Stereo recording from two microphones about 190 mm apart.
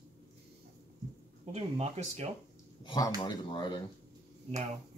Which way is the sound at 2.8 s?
20° left (ahead or behind).